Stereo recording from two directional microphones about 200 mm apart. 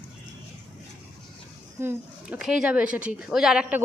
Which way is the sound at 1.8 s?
10° right (ahead or behind).